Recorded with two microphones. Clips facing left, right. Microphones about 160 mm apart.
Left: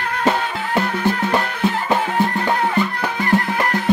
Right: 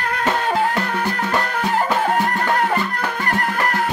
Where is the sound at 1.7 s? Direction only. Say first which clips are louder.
Right 5 dB; 45° right (ahead or behind).